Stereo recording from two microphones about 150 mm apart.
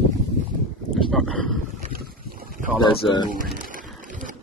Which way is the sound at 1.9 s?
75° right (ahead or behind).